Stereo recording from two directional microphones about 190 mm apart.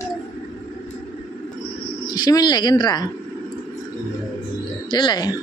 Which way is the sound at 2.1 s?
20° left (ahead or behind).